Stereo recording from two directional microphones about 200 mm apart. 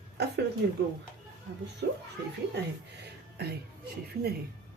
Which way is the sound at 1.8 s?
55° right (ahead or behind).